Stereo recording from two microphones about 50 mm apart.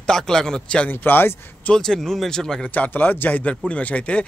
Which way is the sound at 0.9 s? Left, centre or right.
Left.